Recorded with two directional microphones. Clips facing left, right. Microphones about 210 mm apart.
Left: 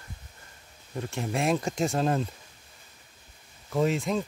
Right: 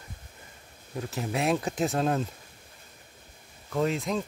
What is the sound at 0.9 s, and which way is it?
Speech, centre (ahead or behind).